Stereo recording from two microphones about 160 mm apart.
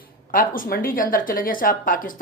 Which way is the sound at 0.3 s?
60° left (ahead or behind).